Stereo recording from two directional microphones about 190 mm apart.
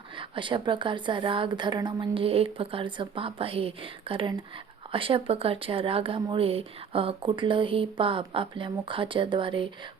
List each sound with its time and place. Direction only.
0.2 s speech: 25° right (ahead or behind)